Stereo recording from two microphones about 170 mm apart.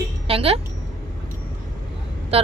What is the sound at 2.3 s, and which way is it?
Speech, 35° right (ahead or behind).